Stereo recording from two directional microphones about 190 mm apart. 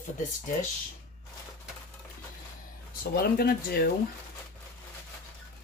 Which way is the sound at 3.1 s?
50° left (ahead or behind).